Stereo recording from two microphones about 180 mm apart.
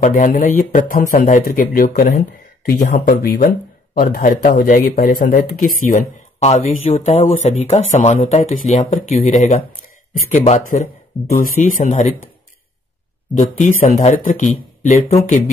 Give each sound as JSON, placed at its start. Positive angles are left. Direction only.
{"t": 0.0, "sound": "speech", "side_deg": 45}
{"t": 13.3, "sound": "speech", "side_deg": 45}